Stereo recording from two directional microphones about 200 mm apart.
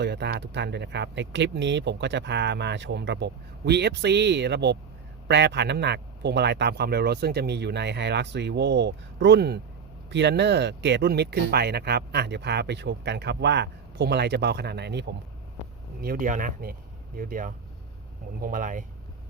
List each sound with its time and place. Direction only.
0.0 s speech: 55° right (ahead or behind)
16.0 s speech: 45° right (ahead or behind)